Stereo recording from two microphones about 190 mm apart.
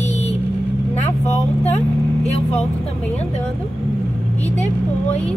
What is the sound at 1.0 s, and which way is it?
Vehicle, 35° left (ahead or behind).